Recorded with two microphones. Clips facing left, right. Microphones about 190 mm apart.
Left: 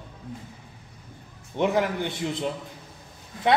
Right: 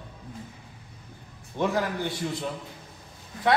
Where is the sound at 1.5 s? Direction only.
20° left (ahead or behind).